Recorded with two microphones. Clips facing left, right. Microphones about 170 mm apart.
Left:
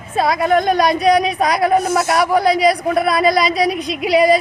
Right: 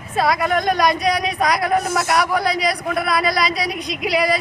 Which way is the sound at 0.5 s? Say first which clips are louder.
Left 4 dB; centre (ahead or behind).